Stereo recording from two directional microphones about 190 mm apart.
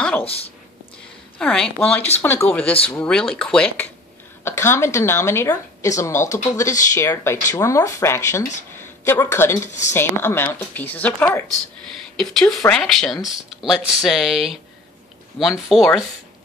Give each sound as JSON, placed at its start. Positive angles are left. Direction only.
{"t": 0.2, "sound": "a woman's voice", "side_deg": 30}
{"t": 1.4, "sound": "a woman's voice", "side_deg": 5}
{"t": 9.7, "sound": "speech", "side_deg": 40}
{"t": 9.9, "sound": "a woman's voice", "side_deg": 10}
{"t": 12.2, "sound": "speech", "side_deg": 0}